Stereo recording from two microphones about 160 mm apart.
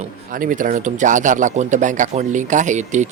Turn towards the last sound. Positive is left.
turn(degrees=-50)  # may be behind; listen again after turning